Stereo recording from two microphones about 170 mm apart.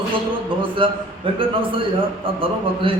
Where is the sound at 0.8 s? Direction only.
30° right (ahead or behind).